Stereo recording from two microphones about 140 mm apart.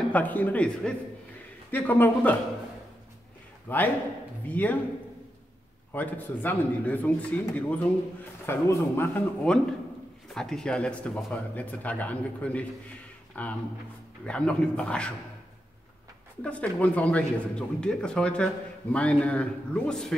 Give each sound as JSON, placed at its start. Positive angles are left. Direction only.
{"t": 0.1, "sound": "a man's voice", "side_deg": 10}
{"t": 3.6, "sound": "a man's voice", "side_deg": 15}
{"t": 5.9, "sound": "a man's voice", "side_deg": 10}
{"t": 10.3, "sound": "a man's voice", "side_deg": 5}
{"t": 16.4, "sound": "a man's voice", "side_deg": 10}